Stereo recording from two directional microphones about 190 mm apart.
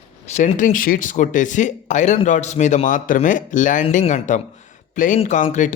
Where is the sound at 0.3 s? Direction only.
45° left (ahead or behind).